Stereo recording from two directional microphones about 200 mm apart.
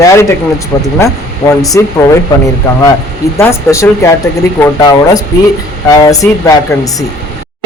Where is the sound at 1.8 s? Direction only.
15° left (ahead or behind).